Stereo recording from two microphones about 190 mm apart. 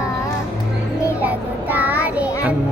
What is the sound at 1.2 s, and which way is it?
Child singing, 10° right (ahead or behind).